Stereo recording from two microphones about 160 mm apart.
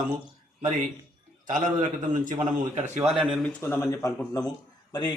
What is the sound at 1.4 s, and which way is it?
A man's voice, 55° right (ahead or behind).